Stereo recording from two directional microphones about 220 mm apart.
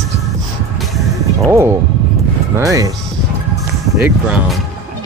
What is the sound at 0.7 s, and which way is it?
Music, centre (ahead or behind).